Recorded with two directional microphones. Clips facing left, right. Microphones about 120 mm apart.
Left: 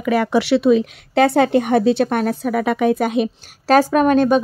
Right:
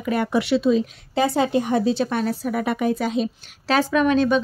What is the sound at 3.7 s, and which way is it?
Speech, 45° left (ahead or behind).